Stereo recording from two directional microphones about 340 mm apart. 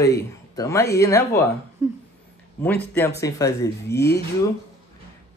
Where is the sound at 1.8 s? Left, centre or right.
Centre.